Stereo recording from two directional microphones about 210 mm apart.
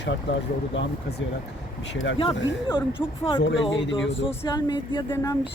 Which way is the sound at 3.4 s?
60° left (ahead or behind).